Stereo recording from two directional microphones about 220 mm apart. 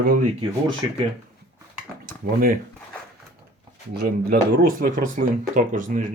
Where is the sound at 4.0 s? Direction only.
45° right (ahead or behind).